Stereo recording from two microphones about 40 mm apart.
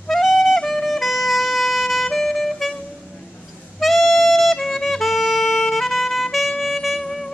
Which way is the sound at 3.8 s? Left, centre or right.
Centre.